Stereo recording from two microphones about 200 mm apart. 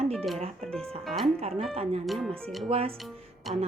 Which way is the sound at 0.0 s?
30° right (ahead or behind).